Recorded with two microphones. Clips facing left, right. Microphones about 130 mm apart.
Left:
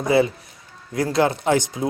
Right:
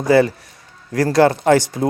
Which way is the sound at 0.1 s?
80° right.